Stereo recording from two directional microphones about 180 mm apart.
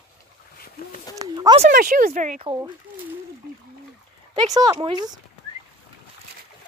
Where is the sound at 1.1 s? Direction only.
20° right (ahead or behind).